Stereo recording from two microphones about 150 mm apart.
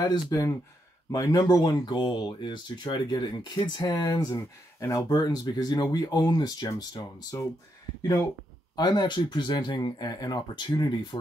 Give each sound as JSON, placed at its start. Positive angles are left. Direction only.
{"t": 0.0, "sound": "speech", "side_deg": 25}
{"t": 8.7, "sound": "speech", "side_deg": 30}